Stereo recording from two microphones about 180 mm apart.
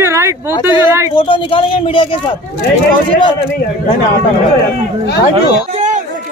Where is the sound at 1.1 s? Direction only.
30° left (ahead or behind).